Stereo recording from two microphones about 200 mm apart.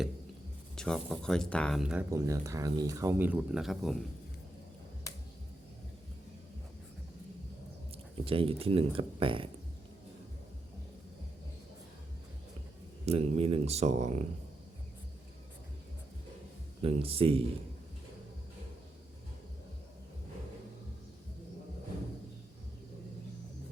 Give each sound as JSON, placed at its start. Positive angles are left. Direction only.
{"t": 0.8, "sound": "speech", "side_deg": 5}
{"t": 8.1, "sound": "speech", "side_deg": -30}
{"t": 13.1, "sound": "speech", "side_deg": -30}
{"t": 16.8, "sound": "speech", "side_deg": -30}